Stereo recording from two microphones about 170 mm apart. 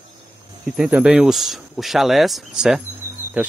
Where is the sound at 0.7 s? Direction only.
5° right (ahead or behind).